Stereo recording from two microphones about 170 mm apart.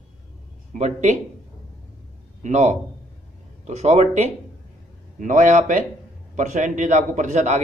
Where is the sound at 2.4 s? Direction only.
45° right (ahead or behind).